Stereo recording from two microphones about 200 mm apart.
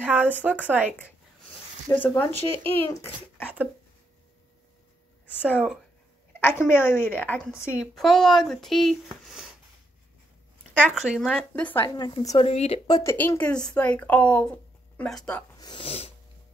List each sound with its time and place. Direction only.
0.0 s speech: 10° right (ahead or behind)
1.9 s speech: 10° left (ahead or behind)
3.3 s a sound: 5° right (ahead or behind)
5.4 s speech: 5° right (ahead or behind)
6.4 s speech: 10° left (ahead or behind)
10.8 s speech: 5° right (ahead or behind)
11.9 s speech: 20° left (ahead or behind)
12.4 s speech: 30° left (ahead or behind); by 15.4 s 5° left (ahead or behind)
15.6 s speech: 25° left (ahead or behind)